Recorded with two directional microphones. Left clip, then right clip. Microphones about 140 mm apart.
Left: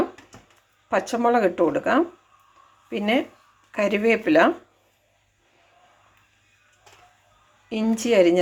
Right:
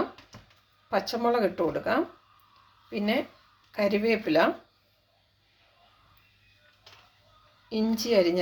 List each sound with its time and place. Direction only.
0.9 s speech: 20° left (ahead or behind)
7.7 s speech: 20° left (ahead or behind)